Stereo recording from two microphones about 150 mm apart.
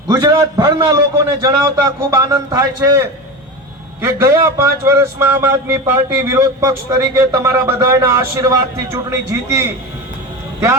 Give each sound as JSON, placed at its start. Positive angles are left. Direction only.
{"t": 0.2, "sound": "a man's voice", "side_deg": -25}